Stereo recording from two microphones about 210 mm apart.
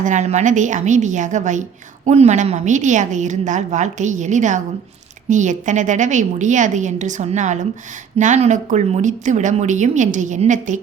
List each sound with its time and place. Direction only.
0.0 s a woman's voice: 35° right (ahead or behind)